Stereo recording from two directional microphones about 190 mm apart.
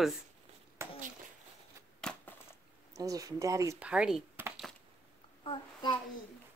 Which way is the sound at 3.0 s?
20° right (ahead or behind).